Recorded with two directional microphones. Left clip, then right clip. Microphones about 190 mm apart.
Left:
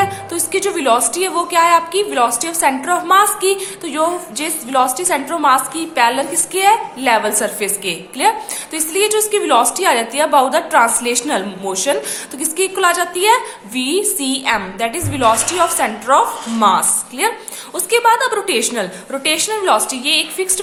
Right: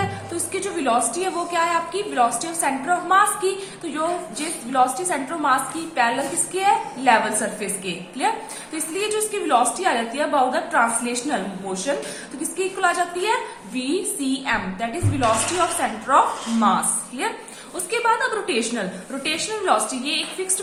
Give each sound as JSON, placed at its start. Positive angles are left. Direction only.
{"t": 0.5, "sound": "a woman's voice", "side_deg": 35}